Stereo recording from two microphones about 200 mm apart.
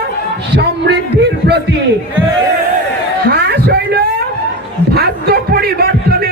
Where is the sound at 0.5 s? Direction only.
55° right (ahead or behind).